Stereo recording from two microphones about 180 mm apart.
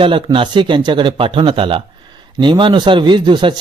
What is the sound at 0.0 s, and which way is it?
A man's voice, 30° right (ahead or behind).